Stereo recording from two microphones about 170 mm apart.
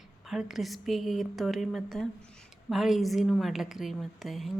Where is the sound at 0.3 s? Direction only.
Centre (ahead or behind).